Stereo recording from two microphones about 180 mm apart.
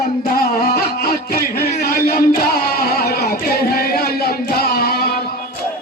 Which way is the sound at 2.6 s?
55° left (ahead or behind).